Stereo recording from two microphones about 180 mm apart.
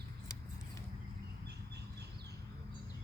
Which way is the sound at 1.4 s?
65° right (ahead or behind).